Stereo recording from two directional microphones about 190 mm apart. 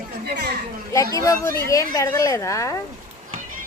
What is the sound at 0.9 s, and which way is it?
A woman's voice, 15° left (ahead or behind).